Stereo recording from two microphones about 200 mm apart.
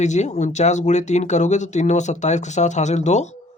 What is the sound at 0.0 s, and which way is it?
Speech, 35° left (ahead or behind).